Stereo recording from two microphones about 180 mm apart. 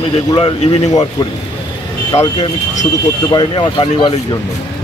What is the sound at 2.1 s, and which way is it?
Speech, 15° left (ahead or behind).